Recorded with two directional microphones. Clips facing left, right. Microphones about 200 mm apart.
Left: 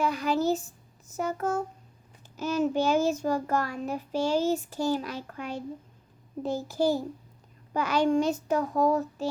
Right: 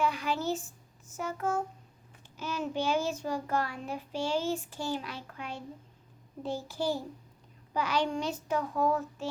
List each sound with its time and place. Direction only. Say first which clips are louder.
0.0 s a child's voice: left 5 dB; 40° left (ahead or behind)